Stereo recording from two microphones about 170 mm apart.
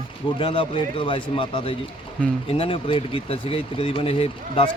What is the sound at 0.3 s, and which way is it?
Speech, 30° left (ahead or behind).